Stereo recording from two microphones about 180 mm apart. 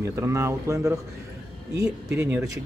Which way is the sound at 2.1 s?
15° right (ahead or behind).